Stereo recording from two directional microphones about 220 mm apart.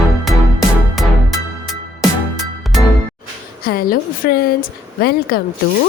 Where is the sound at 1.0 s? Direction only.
Centre (ahead or behind).